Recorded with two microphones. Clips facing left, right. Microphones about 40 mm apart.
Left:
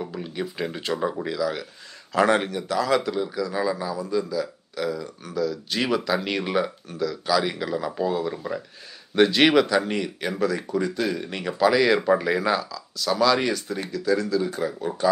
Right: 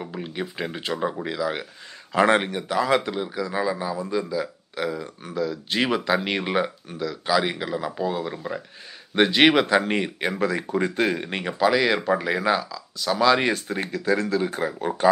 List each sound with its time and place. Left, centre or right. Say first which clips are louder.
0.0 s speech: left 1 dB; centre
9.7 s speech: right 2 dB; right
10.8 s speech: right 4 dB; right
11.4 s speech: left 1 dB; centre
13.5 s speech: right 2 dB; right